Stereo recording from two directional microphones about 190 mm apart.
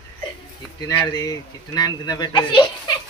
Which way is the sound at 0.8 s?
20° left (ahead or behind).